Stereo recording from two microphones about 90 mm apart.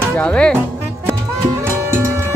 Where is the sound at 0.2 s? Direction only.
10° left (ahead or behind).